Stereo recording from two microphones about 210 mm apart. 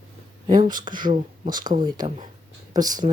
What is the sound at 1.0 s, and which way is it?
Speech, 40° right (ahead or behind).